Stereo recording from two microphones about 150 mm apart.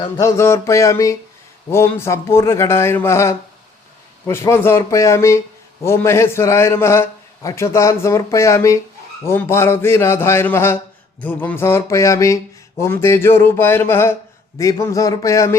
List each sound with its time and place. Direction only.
0.2 s a man's voice: 20° left (ahead or behind)